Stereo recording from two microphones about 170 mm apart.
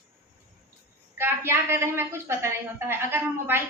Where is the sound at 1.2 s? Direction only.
15° right (ahead or behind).